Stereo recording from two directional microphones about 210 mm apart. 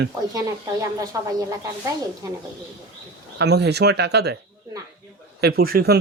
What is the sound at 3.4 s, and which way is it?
Speech, 50° right (ahead or behind).